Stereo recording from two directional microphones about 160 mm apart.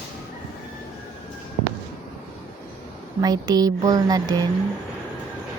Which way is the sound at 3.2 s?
25° right (ahead or behind).